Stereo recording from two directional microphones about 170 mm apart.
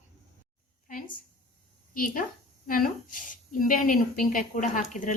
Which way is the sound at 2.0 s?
55° left (ahead or behind).